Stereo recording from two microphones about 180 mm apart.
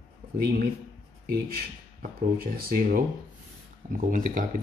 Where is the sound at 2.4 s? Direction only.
55° right (ahead or behind).